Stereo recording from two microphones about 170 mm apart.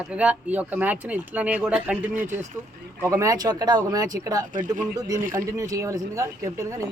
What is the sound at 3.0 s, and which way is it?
Speech, 20° right (ahead or behind).